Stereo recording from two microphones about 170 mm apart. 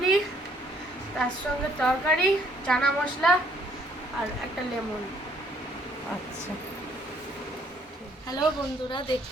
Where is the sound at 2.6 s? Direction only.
5° left (ahead or behind).